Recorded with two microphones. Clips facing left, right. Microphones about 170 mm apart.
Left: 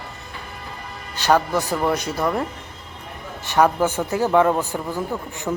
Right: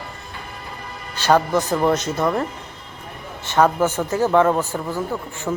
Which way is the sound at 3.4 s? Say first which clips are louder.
Right 1 dB; 15° left (ahead or behind).